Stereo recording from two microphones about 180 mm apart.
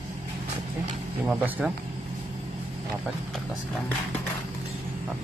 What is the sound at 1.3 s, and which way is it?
Speech, 5° right (ahead or behind).